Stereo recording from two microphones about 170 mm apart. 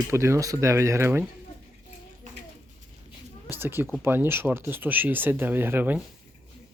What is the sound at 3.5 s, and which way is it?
Speech, 15° right (ahead or behind).